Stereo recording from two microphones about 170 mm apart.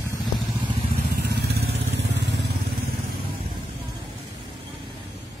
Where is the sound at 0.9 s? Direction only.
70° right (ahead or behind); by 2.5 s 85° right.